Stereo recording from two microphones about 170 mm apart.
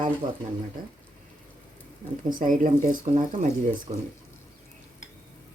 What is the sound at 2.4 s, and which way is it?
Speech, 50° right (ahead or behind).